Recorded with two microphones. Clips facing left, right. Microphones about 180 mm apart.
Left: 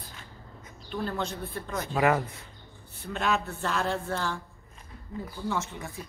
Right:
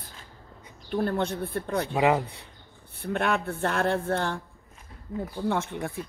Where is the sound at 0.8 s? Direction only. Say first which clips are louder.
Right 5 dB; 60° right (ahead or behind).